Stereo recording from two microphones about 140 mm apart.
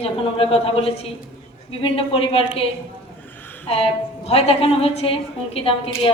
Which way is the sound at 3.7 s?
45° left (ahead or behind).